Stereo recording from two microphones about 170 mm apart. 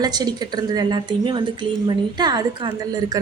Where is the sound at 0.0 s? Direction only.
25° right (ahead or behind).